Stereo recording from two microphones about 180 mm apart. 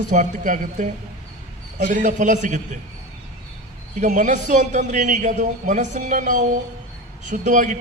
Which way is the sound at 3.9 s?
45° right (ahead or behind).